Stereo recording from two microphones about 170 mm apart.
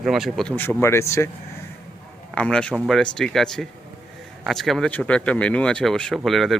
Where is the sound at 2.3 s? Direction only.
5° left (ahead or behind).